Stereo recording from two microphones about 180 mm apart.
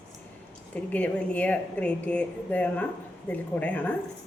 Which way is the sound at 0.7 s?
5° left (ahead or behind).